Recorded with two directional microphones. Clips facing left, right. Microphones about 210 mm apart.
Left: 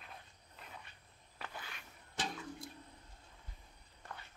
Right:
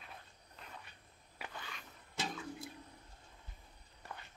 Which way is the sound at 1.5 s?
5° left (ahead or behind).